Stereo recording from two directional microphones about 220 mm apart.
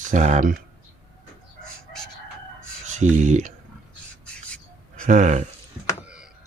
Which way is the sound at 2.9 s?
35° right (ahead or behind).